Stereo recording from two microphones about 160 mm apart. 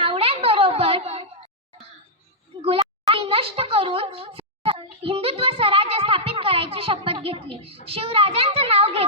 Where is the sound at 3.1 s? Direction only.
35° right (ahead or behind).